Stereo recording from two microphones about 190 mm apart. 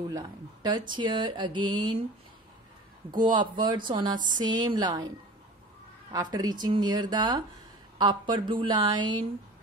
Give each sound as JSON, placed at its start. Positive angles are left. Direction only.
{"t": 0.1, "sound": "speech", "side_deg": -20}
{"t": 3.1, "sound": "speech", "side_deg": -25}
{"t": 6.1, "sound": "speech", "side_deg": -20}